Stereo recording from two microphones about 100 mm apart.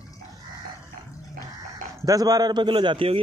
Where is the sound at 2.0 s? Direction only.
35° right (ahead or behind); by 3.1 s 60° right (ahead or behind).